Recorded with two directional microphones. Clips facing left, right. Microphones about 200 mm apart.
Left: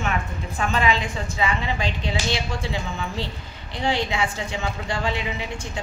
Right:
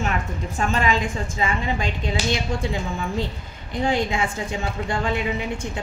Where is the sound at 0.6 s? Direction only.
45° right (ahead or behind).